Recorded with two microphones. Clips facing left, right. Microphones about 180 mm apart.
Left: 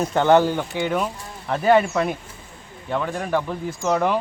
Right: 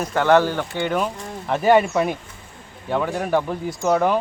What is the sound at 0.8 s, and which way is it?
Speech, centre (ahead or behind).